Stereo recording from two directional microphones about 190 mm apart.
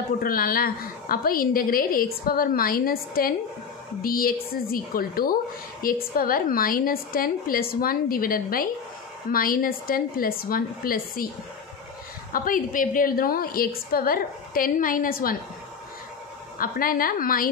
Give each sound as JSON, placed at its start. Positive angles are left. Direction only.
{"t": 0.2, "sound": "a woman's voice", "side_deg": 50}
{"t": 12.3, "sound": "a woman's voice", "side_deg": 45}
{"t": 16.5, "sound": "a woman's voice", "side_deg": 50}